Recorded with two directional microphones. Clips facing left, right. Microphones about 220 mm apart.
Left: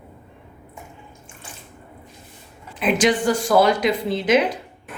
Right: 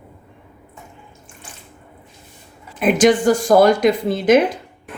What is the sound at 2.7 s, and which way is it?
Speech, 45° right (ahead or behind).